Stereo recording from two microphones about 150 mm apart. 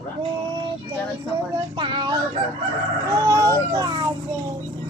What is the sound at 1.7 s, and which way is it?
A child's voice, 30° right (ahead or behind).